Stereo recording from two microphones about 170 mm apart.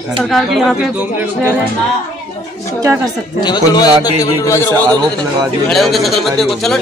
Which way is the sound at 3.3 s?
25° left (ahead or behind).